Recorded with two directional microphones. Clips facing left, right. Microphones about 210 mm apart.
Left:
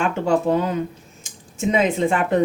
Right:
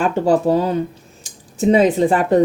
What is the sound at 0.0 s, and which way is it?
Speech, 35° right (ahead or behind).